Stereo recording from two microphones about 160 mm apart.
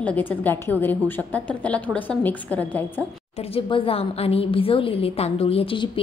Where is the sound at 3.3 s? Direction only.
35° left (ahead or behind).